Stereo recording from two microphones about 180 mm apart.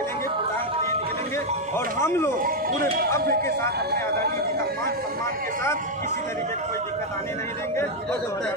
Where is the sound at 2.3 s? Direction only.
55° right (ahead or behind).